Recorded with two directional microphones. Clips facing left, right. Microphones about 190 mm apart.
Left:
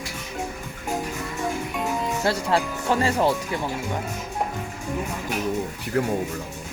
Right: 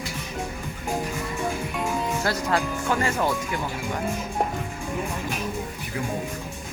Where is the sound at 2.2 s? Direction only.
30° left (ahead or behind).